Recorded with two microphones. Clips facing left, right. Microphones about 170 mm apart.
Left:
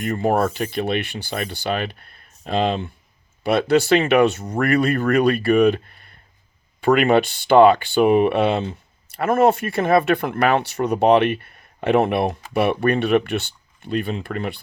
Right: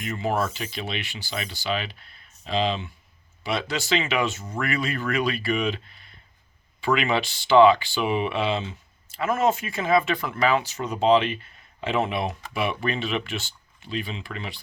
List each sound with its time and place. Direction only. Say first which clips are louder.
0.0 s speech: left 7 dB; 50° left (ahead or behind)